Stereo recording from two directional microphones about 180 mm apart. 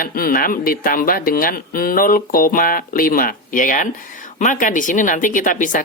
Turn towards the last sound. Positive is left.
turn(degrees=45)  # may be behind; listen again after turning